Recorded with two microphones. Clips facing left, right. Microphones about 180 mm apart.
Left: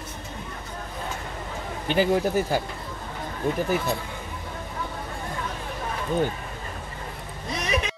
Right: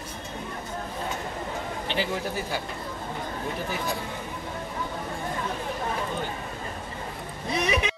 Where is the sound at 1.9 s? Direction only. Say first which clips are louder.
Left 9 dB; 45° left (ahead or behind).